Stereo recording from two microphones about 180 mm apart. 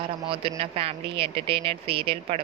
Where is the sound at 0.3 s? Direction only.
30° right (ahead or behind).